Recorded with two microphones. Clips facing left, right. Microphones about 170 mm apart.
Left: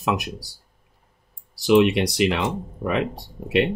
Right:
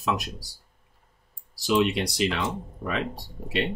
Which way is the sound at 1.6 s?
65° left (ahead or behind).